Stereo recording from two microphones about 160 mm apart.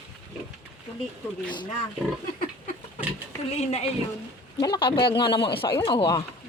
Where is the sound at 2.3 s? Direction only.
60° left (ahead or behind).